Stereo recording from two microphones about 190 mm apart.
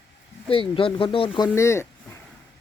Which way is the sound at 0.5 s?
30° left (ahead or behind).